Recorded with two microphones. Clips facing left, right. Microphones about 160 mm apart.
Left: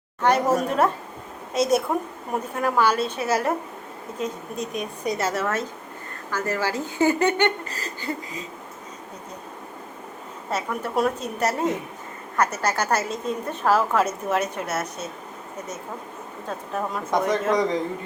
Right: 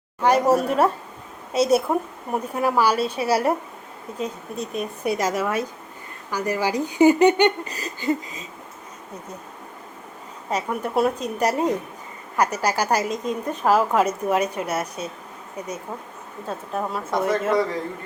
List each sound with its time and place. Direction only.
0.2 s a woman's voice: 10° right (ahead or behind)
4.5 s a woman's voice: 30° right (ahead or behind)
4.8 s a woman's voice: 10° right (ahead or behind)
10.5 s a woman's voice: 10° right (ahead or behind)
16.5 s a woman's voice: 5° right (ahead or behind)